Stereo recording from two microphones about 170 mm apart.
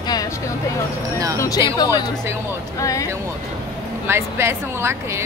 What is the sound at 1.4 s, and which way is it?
Speech, 25° left (ahead or behind).